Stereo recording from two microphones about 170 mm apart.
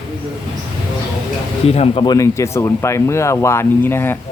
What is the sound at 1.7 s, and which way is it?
Speech, 35° left (ahead or behind).